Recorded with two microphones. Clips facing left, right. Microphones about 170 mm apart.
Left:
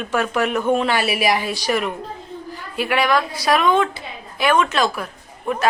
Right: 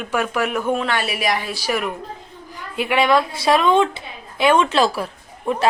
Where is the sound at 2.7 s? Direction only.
20° right (ahead or behind).